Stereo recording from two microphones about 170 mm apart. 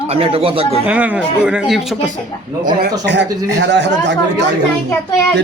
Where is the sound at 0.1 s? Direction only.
35° right (ahead or behind).